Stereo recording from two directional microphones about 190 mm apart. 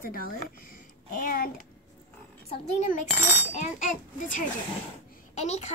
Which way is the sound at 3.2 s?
10° right (ahead or behind).